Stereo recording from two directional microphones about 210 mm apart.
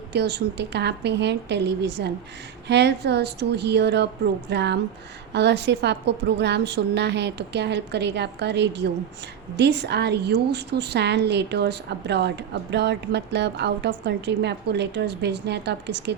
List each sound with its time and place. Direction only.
0.1 s a woman's voice: 50° right (ahead or behind)